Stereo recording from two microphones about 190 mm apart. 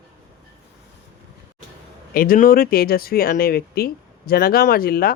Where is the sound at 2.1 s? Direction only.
45° left (ahead or behind).